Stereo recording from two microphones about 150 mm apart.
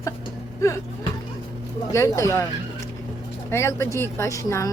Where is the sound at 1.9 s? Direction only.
20° left (ahead or behind).